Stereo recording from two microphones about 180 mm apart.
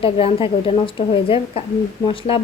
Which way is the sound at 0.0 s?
30° left (ahead or behind).